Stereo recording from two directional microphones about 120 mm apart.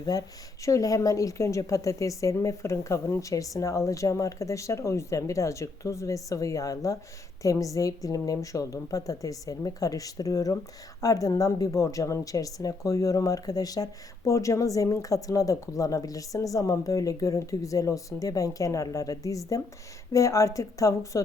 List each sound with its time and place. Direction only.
0.0 s a woman's voice: 30° left (ahead or behind)